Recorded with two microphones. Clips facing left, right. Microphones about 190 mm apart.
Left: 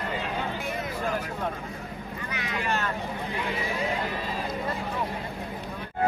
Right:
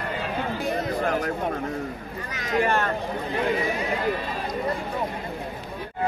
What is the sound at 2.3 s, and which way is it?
Speech, 45° right (ahead or behind).